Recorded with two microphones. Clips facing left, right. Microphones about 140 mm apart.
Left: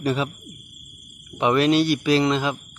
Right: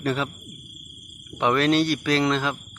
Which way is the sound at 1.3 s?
5° left (ahead or behind).